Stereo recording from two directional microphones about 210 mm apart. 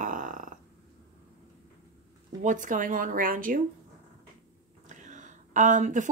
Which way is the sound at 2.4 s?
35° right (ahead or behind).